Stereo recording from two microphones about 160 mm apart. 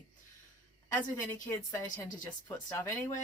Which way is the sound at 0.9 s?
15° left (ahead or behind).